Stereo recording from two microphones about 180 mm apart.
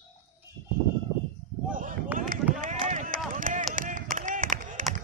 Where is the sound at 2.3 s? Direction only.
50° right (ahead or behind).